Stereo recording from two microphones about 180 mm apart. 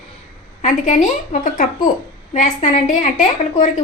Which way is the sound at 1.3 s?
45° left (ahead or behind).